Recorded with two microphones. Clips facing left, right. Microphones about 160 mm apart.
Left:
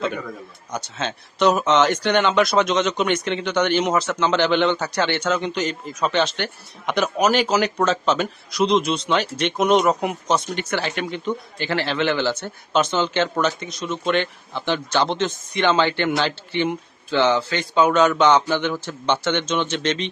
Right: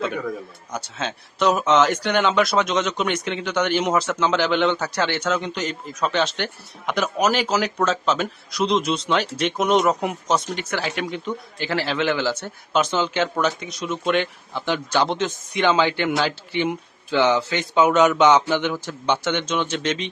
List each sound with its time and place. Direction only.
0.7 s speech: 5° right (ahead or behind)